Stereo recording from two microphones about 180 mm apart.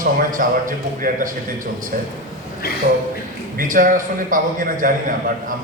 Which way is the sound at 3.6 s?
50° right (ahead or behind).